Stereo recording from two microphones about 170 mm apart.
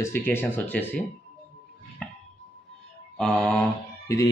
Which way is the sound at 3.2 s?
5° left (ahead or behind).